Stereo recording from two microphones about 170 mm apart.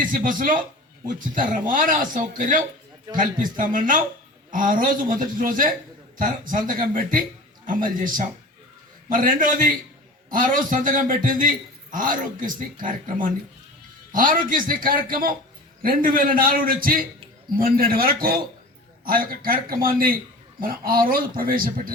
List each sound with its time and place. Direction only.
0.0 s a man's voice: 50° right (ahead or behind)